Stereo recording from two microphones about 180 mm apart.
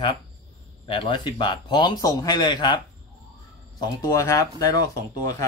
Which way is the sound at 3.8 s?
20° left (ahead or behind).